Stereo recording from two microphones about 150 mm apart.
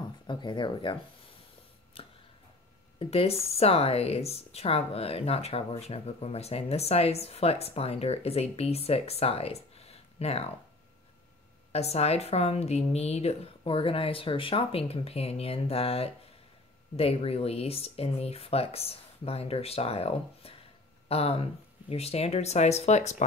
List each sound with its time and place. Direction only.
0.3 s speech: 30° left (ahead or behind)
2.0 s a sound: 35° left (ahead or behind)
3.0 s speech: 40° left (ahead or behind)
11.7 s speech: 45° left (ahead or behind)